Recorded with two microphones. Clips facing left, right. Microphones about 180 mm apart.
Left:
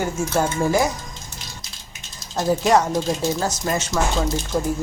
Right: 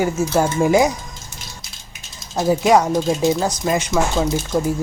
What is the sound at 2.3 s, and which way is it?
Speech, 10° right (ahead or behind).